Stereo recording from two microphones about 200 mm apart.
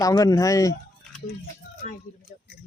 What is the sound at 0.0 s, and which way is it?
Speech, 15° left (ahead or behind).